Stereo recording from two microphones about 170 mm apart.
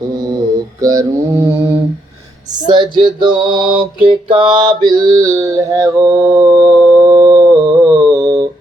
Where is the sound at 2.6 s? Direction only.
25° right (ahead or behind).